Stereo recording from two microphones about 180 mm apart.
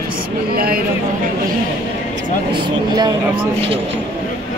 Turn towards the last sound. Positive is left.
turn(degrees=-30)  # may be behind; listen again after turning